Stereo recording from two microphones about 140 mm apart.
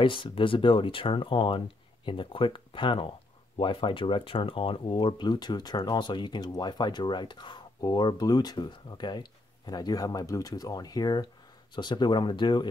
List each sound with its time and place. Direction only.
0.0 s speech: 35° left (ahead or behind)